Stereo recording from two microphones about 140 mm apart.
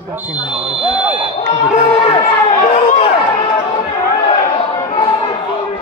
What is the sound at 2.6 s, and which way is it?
Run, 55° left (ahead or behind).